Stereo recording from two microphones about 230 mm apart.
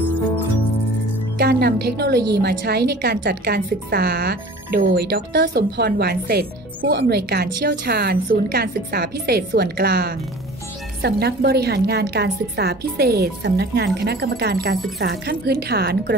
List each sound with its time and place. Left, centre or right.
1.4 s a woman's voice: right